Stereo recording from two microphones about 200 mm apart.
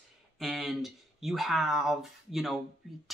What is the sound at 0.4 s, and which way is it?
Speech, centre (ahead or behind).